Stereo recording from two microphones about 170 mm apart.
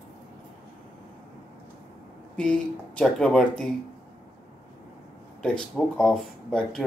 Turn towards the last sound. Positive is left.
turn(degrees=5)  # may be behind; listen again after turning